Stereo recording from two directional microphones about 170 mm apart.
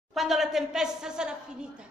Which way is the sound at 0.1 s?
Centre (ahead or behind).